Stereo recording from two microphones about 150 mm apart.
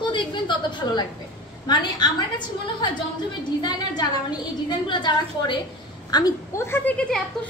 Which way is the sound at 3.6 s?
30° left (ahead or behind).